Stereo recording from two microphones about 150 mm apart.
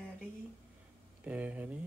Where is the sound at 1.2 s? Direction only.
10° right (ahead or behind).